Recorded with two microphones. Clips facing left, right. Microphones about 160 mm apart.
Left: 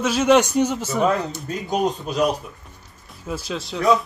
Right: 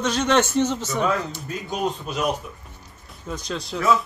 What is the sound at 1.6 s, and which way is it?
Speech, 35° left (ahead or behind).